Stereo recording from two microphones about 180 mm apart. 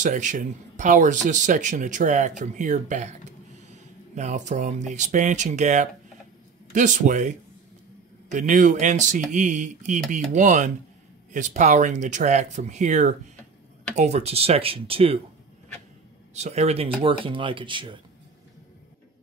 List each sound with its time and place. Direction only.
0.0 s speech: 45° right (ahead or behind)
16.3 s speech: 40° right (ahead or behind)